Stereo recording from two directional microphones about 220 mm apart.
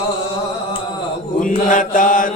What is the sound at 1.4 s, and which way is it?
Mantra, 35° left (ahead or behind).